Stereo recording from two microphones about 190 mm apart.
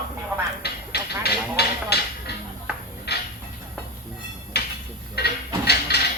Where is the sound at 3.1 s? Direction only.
60° left (ahead or behind).